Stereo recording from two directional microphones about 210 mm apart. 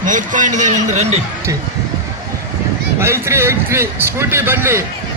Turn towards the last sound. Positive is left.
turn(degrees=-10)  # may be behind; listen again after turning